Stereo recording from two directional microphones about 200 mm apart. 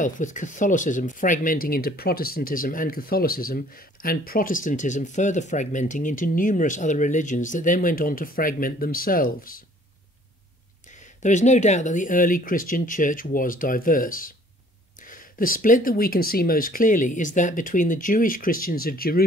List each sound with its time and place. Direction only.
0.0 s speech: 40° left (ahead or behind)
10.9 s speech: 35° left (ahead or behind)